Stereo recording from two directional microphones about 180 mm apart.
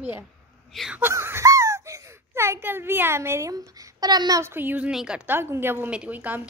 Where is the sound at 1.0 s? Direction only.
15° right (ahead or behind).